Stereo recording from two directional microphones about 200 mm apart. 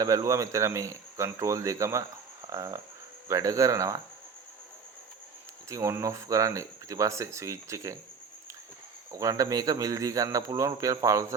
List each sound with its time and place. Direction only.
0.0 s speech: 15° right (ahead or behind)
5.6 s speech: 15° right (ahead or behind)
9.1 s speech: 15° right (ahead or behind)